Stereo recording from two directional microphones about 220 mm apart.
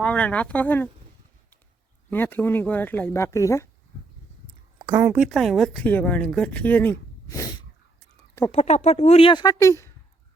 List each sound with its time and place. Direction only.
0.0 s speech: 5° left (ahead or behind)
2.0 s speech: 10° left (ahead or behind)
4.8 s speech: 15° right (ahead or behind); by 7.5 s 15° left (ahead or behind)
8.5 s speech: 30° left (ahead or behind); by 9.9 s 15° left (ahead or behind)